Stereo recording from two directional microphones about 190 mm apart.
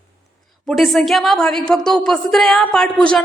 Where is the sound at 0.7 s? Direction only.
Centre (ahead or behind).